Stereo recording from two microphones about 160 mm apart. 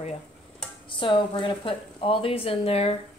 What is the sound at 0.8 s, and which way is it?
Speech, 30° left (ahead or behind).